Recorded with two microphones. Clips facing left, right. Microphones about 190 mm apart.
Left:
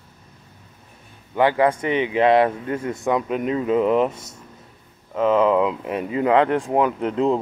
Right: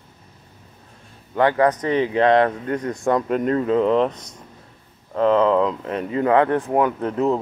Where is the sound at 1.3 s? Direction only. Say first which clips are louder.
Even; 10° left (ahead or behind).